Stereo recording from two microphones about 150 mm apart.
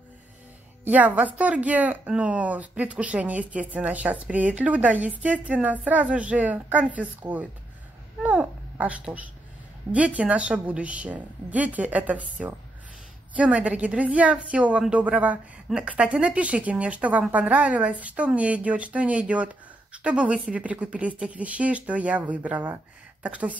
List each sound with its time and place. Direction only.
0.8 s a woman's voice: 10° right (ahead or behind)